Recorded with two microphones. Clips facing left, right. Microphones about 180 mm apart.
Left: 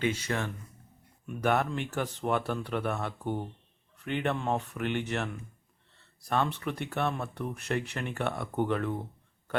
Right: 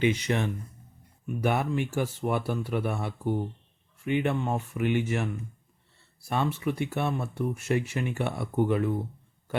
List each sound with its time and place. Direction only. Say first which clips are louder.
0.0 s speech: right 5 dB; 15° right (ahead or behind)